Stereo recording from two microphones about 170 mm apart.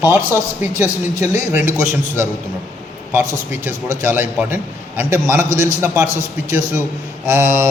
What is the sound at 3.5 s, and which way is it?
A man's voice, 15° right (ahead or behind).